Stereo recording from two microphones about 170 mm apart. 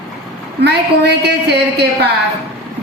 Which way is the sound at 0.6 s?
80° right.